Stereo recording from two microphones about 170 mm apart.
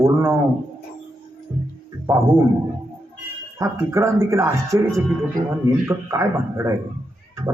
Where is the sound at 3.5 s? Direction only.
15° right (ahead or behind).